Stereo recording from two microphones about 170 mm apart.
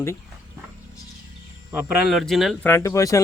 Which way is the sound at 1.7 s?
10° right (ahead or behind).